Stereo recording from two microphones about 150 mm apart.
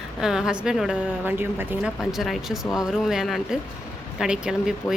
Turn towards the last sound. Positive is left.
turn(degrees=-5)  # may be behind; listen again after turning